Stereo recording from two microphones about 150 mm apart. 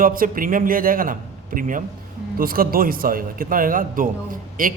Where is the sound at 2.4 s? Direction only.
75° right (ahead or behind).